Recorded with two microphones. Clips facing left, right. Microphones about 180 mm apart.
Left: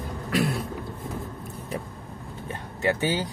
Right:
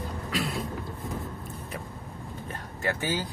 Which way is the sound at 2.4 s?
15° left (ahead or behind).